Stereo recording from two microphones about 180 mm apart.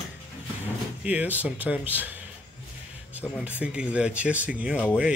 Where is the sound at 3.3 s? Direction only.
5° right (ahead or behind).